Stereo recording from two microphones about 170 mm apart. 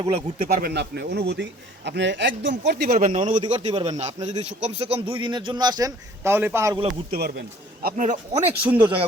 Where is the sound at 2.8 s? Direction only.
45° right (ahead or behind).